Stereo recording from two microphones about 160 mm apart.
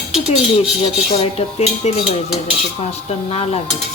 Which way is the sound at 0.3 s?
35° left (ahead or behind).